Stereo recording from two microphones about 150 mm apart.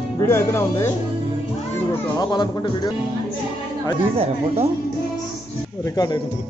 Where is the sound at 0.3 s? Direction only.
15° left (ahead or behind).